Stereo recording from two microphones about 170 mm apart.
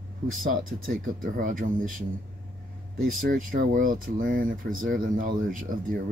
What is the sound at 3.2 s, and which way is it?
Speech, 55° right (ahead or behind).